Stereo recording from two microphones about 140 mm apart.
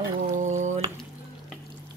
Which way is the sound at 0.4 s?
60° right (ahead or behind).